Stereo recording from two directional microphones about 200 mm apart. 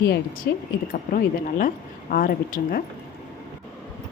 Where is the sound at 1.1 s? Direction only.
45° left (ahead or behind).